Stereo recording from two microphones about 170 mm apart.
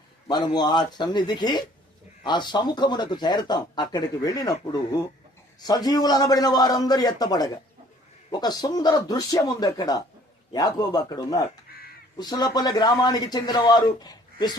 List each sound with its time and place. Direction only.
0.3 s speech: 25° left (ahead or behind)